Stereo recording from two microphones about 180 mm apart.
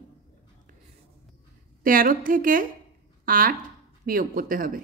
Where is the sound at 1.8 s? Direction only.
50° right (ahead or behind).